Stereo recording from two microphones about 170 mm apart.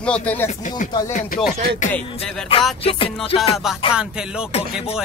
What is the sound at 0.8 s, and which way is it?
Speech, 50° left (ahead or behind).